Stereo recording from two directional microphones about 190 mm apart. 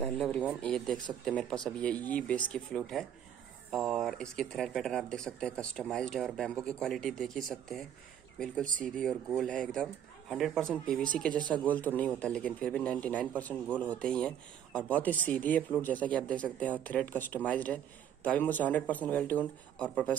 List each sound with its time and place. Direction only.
0.0 s a man's voice: 5° left (ahead or behind)
8.6 s speech: 45° right (ahead or behind)
9.3 s a man's voice: centre (ahead or behind)